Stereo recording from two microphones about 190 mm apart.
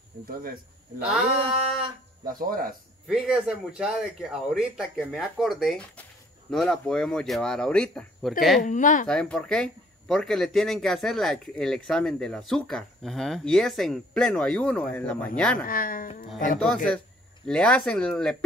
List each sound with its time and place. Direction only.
0.4 s speech: 50° right (ahead or behind)
2.2 s speech: 50° right (ahead or behind)
3.1 s speech: 5° right (ahead or behind)
8.6 s speech: 40° left (ahead or behind)
9.0 s speech: 5° left (ahead or behind)
15.6 s speech: 45° left (ahead or behind)
16.5 s speech: 5° left (ahead or behind)